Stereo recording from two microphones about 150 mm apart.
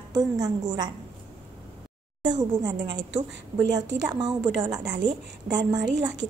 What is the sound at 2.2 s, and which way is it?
A woman's voice, 30° right (ahead or behind).